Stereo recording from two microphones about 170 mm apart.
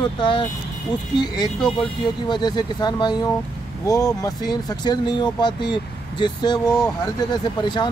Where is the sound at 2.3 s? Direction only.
25° left (ahead or behind).